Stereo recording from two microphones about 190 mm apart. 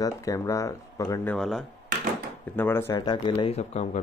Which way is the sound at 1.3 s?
Centre (ahead or behind).